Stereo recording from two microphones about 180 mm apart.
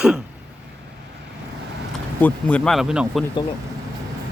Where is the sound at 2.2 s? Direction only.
5° left (ahead or behind).